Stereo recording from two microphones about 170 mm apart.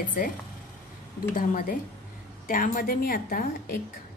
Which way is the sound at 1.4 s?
55° left (ahead or behind).